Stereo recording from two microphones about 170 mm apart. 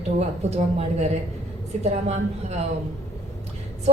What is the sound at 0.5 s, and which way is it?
A woman's voice, 40° right (ahead or behind).